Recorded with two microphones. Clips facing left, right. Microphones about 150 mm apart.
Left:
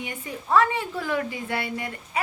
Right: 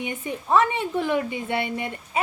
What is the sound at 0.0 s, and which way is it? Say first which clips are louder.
A woman's voice: right 4 dB; 20° right (ahead or behind).